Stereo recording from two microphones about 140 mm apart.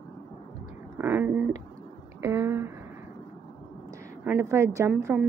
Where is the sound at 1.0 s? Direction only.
15° right (ahead or behind).